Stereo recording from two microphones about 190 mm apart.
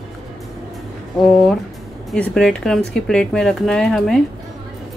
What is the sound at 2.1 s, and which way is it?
Speech, 5° left (ahead or behind).